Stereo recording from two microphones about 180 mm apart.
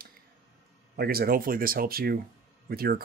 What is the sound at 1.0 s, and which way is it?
Speech, 55° right (ahead or behind).